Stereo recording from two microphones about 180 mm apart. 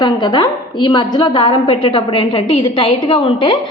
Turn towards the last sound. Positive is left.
turn(degrees=30)  # may be behind; listen again after turning